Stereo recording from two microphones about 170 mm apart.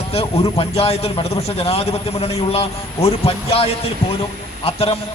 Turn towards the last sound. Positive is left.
turn(degrees=35)  # may be behind; listen again after turning